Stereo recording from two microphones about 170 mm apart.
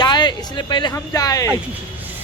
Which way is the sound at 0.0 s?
25° left (ahead or behind).